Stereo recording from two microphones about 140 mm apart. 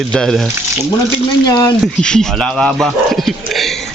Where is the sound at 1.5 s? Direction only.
25° left (ahead or behind).